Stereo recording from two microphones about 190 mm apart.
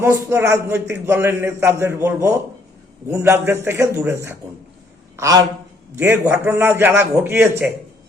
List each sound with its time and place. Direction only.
0.0 s a man's voice: 15° right (ahead or behind)